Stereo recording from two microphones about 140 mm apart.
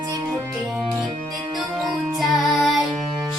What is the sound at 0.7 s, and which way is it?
Music, centre (ahead or behind).